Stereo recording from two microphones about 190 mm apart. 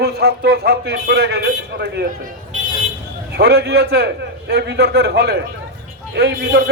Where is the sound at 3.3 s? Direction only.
60° right (ahead or behind).